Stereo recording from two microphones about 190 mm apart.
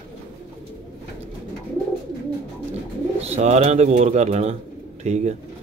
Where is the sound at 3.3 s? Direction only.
35° right (ahead or behind).